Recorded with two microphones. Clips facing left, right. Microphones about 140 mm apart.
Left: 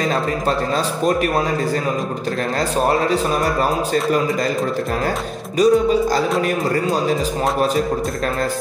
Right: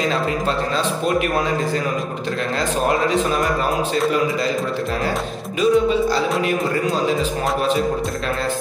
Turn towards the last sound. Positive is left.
turn(degrees=40)  # may be behind; listen again after turning